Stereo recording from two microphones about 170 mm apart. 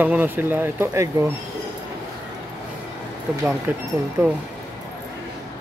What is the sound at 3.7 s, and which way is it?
Speech, 10° right (ahead or behind).